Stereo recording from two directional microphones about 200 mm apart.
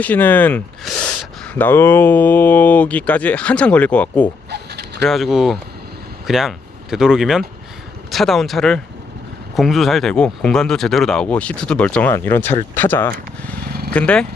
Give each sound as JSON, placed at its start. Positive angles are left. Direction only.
{"t": 0.0, "sound": "speech", "side_deg": 10}
{"t": 4.5, "sound": "a sound", "side_deg": -55}
{"t": 5.0, "sound": "speech", "side_deg": 0}